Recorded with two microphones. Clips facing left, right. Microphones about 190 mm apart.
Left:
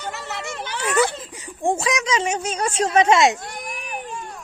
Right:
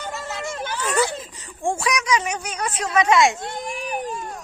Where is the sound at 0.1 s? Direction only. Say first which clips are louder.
Right 1 dB; 65° left (ahead or behind).